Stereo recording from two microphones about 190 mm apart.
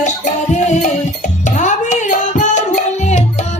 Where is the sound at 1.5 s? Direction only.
40° left (ahead or behind).